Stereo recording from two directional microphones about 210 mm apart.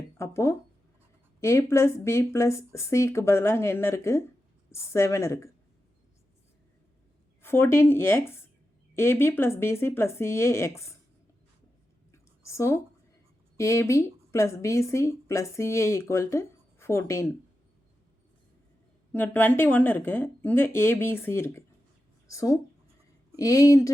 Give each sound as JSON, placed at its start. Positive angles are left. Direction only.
{"t": 0.2, "sound": "speech", "side_deg": 15}
{"t": 7.4, "sound": "speech", "side_deg": 10}
{"t": 12.1, "sound": "a sound", "side_deg": 15}
{"t": 13.6, "sound": "speech", "side_deg": 15}
{"t": 19.1, "sound": "speech", "side_deg": 10}